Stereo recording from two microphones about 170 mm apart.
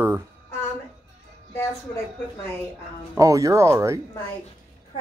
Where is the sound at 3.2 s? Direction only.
20° right (ahead or behind).